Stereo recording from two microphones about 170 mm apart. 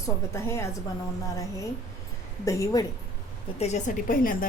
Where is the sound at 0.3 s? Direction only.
15° left (ahead or behind).